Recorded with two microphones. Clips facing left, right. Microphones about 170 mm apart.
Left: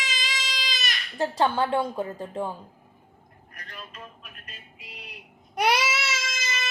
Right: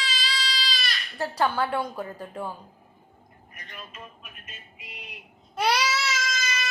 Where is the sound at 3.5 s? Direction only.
5° right (ahead or behind).